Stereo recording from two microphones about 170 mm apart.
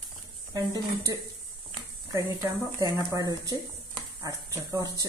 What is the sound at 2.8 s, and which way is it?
Speech, 20° right (ahead or behind).